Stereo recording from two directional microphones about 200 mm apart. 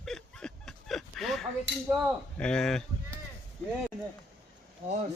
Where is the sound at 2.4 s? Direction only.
5° left (ahead or behind).